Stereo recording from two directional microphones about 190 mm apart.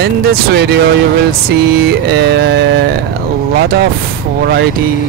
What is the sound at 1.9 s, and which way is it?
Speech, 60° right (ahead or behind).